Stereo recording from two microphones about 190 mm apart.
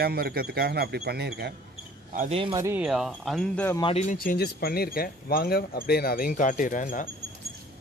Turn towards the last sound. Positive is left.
turn(degrees=45)  # may be behind; listen again after turning